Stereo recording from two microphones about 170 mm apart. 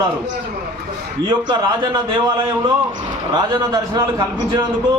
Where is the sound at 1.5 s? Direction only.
25° right (ahead or behind).